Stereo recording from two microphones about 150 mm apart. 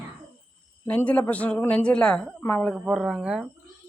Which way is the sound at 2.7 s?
Centre (ahead or behind).